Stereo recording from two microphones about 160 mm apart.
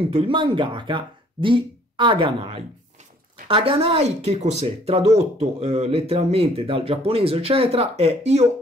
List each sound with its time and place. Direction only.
0.0 s speech: 35° right (ahead or behind)